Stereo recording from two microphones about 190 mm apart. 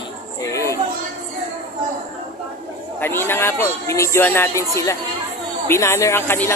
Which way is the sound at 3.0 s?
10° left (ahead or behind).